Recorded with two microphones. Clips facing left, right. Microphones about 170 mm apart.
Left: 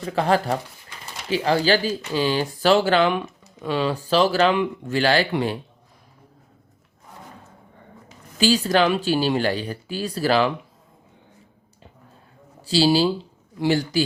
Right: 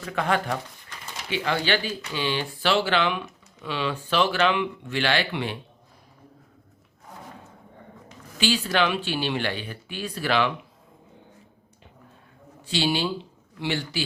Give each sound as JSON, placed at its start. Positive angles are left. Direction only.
{"t": 0.0, "sound": "speech", "side_deg": 35}
{"t": 8.4, "sound": "speech", "side_deg": 40}
{"t": 12.6, "sound": "speech", "side_deg": 35}